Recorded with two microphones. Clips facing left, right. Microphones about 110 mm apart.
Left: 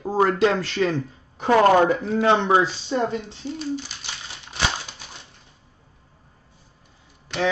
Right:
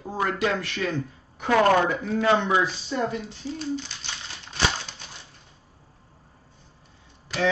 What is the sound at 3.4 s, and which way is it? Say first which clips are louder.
Speech: left 2 dB; 65° left (ahead or behind).